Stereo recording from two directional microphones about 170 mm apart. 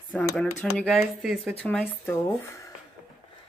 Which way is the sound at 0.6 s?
5° left (ahead or behind).